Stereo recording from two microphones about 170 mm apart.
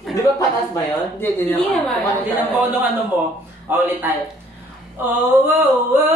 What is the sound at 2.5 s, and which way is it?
Singing, 10° right (ahead or behind).